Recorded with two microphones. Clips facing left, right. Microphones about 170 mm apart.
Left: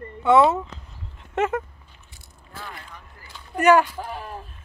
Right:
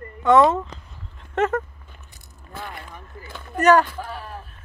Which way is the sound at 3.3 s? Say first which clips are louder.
Right 3 dB; 55° right (ahead or behind).